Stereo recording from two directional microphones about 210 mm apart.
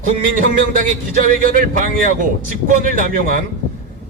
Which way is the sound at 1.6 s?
40° right (ahead or behind).